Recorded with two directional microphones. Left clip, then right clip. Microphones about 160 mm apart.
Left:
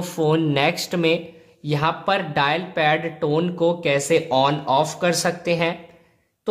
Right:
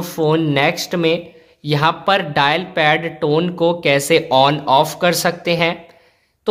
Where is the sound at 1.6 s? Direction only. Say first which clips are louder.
Right 6 dB; 15° right (ahead or behind).